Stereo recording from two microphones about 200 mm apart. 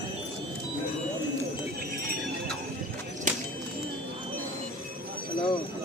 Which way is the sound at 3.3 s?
40° right (ahead or behind).